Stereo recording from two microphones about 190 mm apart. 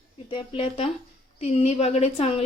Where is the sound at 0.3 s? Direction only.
25° left (ahead or behind).